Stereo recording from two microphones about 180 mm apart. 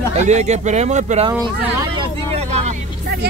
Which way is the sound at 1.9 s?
35° right (ahead or behind).